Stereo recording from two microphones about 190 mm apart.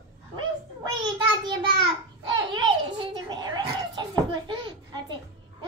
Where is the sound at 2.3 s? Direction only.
25° right (ahead or behind).